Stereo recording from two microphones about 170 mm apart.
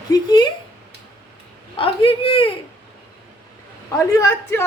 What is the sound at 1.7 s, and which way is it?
Speech, 30° left (ahead or behind).